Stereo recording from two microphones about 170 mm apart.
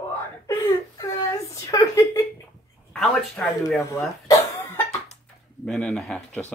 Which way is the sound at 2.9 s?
Centre (ahead or behind).